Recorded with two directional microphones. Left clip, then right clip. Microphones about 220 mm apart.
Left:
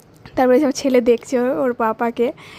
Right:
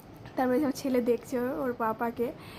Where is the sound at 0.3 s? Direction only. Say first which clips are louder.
Left 13 dB; 35° left (ahead or behind).